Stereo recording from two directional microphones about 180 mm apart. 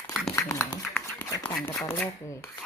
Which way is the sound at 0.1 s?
Centre (ahead or behind).